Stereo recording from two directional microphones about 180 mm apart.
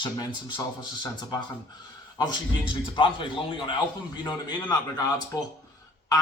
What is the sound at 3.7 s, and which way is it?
A man's voice, 25° left (ahead or behind).